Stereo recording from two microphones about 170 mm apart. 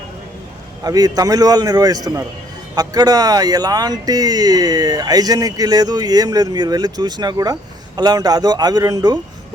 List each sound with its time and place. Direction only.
0.9 s speech: 20° right (ahead or behind)